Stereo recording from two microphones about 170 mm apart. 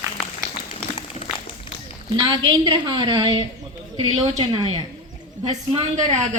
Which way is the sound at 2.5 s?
25° right (ahead or behind).